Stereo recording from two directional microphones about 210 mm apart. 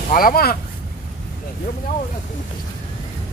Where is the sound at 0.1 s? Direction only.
45° left (ahead or behind).